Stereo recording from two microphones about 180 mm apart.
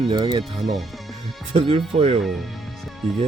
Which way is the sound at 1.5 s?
30° right (ahead or behind).